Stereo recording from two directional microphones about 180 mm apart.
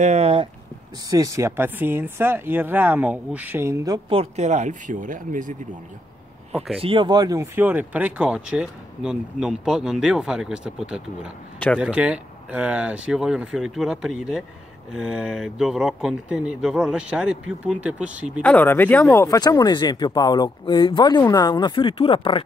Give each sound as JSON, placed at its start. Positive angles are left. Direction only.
{"t": 0.0, "sound": "speech", "side_deg": -35}
{"t": 1.1, "sound": "speech", "side_deg": -20}
{"t": 4.2, "sound": "speech", "side_deg": -40}
{"t": 6.8, "sound": "speech", "side_deg": -30}
{"t": 18.4, "sound": "speech", "side_deg": 10}